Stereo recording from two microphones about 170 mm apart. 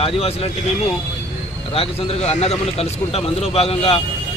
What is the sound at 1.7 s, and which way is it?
Speech, 35° left (ahead or behind).